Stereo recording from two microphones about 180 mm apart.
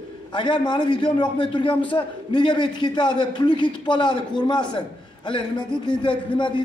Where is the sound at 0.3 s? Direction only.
25° left (ahead or behind).